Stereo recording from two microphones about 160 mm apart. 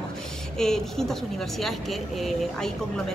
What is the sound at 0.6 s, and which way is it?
Speech, 5° left (ahead or behind).